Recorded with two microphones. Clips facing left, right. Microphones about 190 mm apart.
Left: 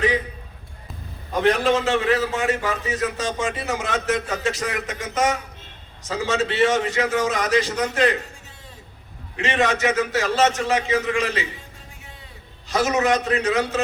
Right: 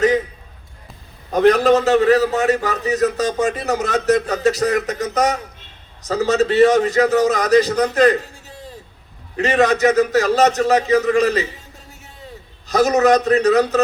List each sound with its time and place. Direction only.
1.3 s a man's voice: 40° right (ahead or behind)
9.3 s a man's voice: 40° right (ahead or behind)
12.6 s a man's voice: 40° right (ahead or behind)